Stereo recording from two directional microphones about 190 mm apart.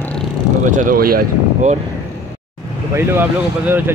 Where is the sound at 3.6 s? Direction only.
10° right (ahead or behind).